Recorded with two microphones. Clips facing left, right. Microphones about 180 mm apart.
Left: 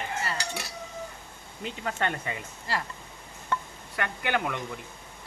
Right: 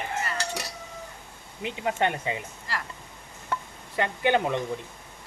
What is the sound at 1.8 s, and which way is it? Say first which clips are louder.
Speech: right 5 dB; 15° right (ahead or behind).